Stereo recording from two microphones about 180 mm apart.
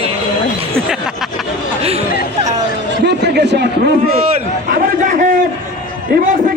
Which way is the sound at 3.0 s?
70° right (ahead or behind).